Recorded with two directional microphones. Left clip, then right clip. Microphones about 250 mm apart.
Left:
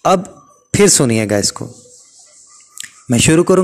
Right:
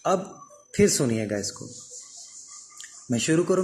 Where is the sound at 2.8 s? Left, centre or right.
Left.